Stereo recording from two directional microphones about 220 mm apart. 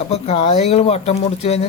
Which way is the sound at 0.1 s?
30° left (ahead or behind).